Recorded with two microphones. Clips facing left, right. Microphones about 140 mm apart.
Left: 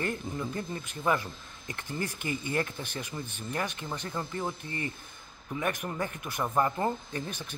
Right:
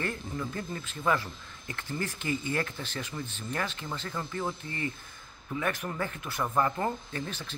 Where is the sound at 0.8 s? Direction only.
15° left (ahead or behind).